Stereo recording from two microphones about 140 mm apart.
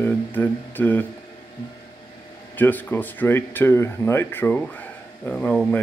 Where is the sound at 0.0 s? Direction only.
15° left (ahead or behind).